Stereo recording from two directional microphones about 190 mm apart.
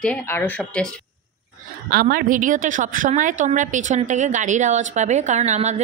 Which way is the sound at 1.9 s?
50° right (ahead or behind).